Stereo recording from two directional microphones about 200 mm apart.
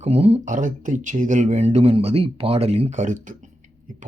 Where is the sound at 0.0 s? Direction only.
30° right (ahead or behind).